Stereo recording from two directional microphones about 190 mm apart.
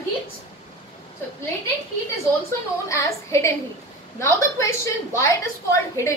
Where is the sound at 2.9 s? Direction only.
15° left (ahead or behind).